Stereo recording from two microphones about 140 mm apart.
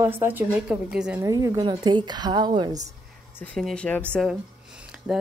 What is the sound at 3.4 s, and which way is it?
Speech, 5° left (ahead or behind).